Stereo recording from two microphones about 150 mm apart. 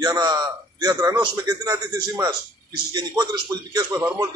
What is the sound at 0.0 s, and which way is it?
A man's voice, 25° right (ahead or behind).